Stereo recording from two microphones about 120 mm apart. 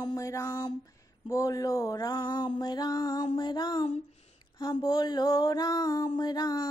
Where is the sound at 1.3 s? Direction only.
30° left (ahead or behind).